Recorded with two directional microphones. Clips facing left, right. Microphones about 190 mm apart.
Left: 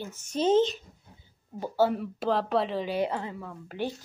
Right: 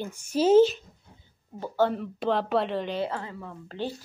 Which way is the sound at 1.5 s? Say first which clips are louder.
Even; 10° left (ahead or behind).